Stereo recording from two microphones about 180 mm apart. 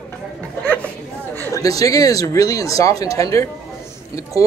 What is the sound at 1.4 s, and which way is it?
A man's voice, 20° left (ahead or behind).